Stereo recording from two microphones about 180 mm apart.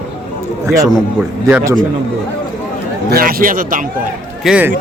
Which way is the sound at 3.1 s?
55° right (ahead or behind).